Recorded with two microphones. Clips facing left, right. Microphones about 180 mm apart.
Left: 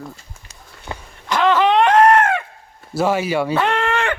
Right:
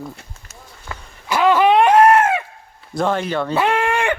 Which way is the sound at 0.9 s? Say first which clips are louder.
Left 3 dB; 20° left (ahead or behind).